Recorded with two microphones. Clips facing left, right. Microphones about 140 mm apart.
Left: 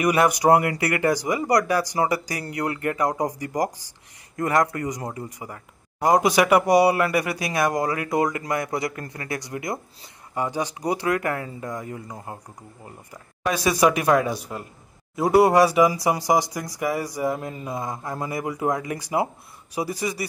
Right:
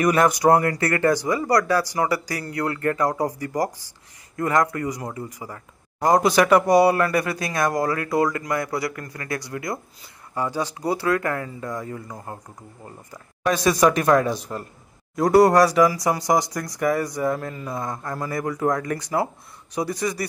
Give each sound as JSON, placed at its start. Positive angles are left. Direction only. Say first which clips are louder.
{"t": 0.0, "sound": "speech", "louder": "right 1 dB", "side_deg": 10}
{"t": 13.5, "sound": "speech", "louder": "right 2 dB", "side_deg": 10}